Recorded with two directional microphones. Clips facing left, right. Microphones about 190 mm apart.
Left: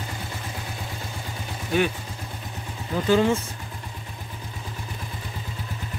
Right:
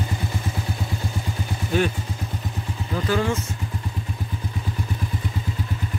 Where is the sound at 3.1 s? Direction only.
20° left (ahead or behind).